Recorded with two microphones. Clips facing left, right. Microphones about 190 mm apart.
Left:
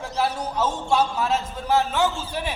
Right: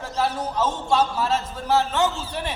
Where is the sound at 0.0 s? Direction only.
10° left (ahead or behind).